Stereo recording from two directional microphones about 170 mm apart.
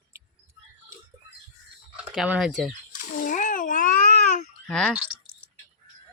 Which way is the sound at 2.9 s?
50° left (ahead or behind).